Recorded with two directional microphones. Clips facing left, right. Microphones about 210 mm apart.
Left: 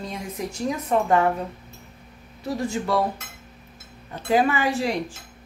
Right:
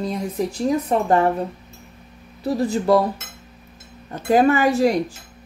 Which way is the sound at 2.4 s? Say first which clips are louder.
Right 6 dB; 35° right (ahead or behind).